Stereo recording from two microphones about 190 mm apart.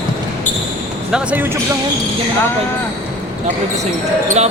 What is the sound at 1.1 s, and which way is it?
Speech, 10° right (ahead or behind).